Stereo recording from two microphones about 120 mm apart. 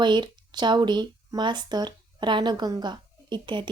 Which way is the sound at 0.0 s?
40° right (ahead or behind).